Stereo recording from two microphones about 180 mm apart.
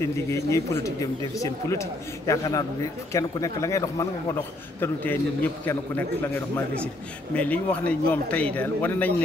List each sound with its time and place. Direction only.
0.5 s a man's voice: 15° left (ahead or behind)